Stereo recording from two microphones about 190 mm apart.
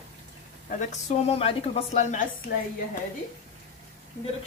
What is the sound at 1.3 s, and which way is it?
Speech, 30° left (ahead or behind).